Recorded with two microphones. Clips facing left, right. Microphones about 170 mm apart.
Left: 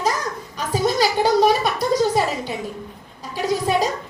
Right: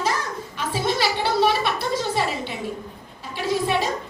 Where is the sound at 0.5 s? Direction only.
40° left (ahead or behind).